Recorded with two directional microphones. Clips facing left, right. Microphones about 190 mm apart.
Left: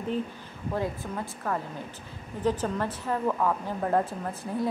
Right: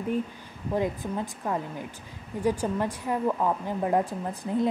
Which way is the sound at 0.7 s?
20° right (ahead or behind).